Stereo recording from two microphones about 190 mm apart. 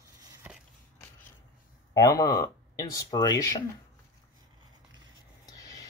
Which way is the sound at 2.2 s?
15° left (ahead or behind).